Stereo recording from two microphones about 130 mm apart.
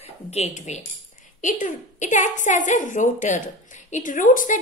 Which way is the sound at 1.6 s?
70° left (ahead or behind).